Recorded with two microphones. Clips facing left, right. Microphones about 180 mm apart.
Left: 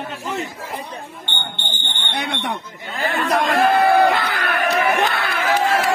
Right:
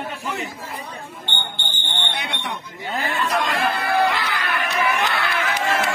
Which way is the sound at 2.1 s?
55° left (ahead or behind).